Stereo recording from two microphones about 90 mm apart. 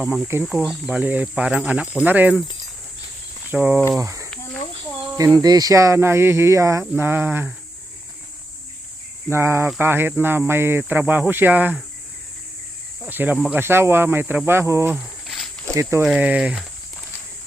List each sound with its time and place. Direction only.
0.0 s speech: 5° right (ahead or behind)
1.0 s speech: 15° right (ahead or behind)
3.5 s speech: 20° right (ahead or behind)
3.9 s speech: 35° right (ahead or behind)
6.9 s speech: 25° right (ahead or behind)
9.3 s speech: 30° right (ahead or behind)
13.1 s speech: 20° right (ahead or behind)
14.9 s a sound: 5° left (ahead or behind)
15.7 s speech: 30° right (ahead or behind)
16.1 s speech: 15° right (ahead or behind)